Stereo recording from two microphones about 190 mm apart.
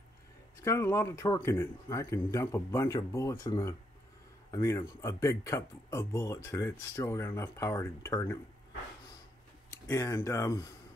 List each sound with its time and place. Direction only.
0.7 s speech: 15° left (ahead or behind)
9.8 s speech: 15° left (ahead or behind)